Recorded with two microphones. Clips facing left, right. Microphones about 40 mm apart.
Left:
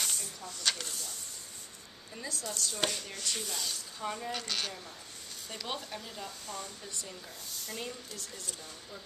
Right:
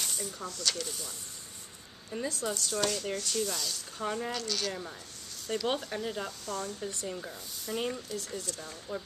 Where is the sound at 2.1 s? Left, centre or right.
Right.